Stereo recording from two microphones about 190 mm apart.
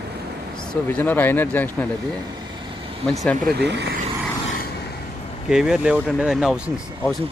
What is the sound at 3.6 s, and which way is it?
Speech, 65° right (ahead or behind).